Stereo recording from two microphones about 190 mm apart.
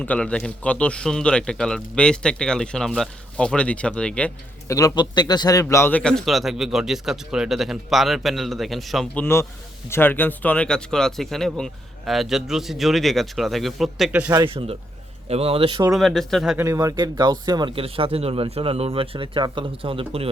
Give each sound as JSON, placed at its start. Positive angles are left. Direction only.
{"t": 0.0, "sound": "a man's voice", "side_deg": 5}
{"t": 4.7, "sound": "a man's voice", "side_deg": 15}
{"t": 9.2, "sound": "a man's voice", "side_deg": 15}
{"t": 14.3, "sound": "speech", "side_deg": -20}
{"t": 15.3, "sound": "speech", "side_deg": -30}
{"t": 16.0, "sound": "a man's voice", "side_deg": 0}
{"t": 16.6, "sound": "speech", "side_deg": -15}